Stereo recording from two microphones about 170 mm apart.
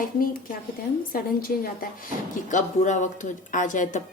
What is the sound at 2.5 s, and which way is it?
Speech, 45° left (ahead or behind).